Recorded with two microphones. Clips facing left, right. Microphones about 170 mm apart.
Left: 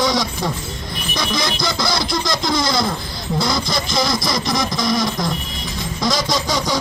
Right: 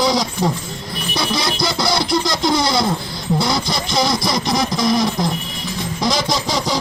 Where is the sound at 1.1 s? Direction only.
30° right (ahead or behind).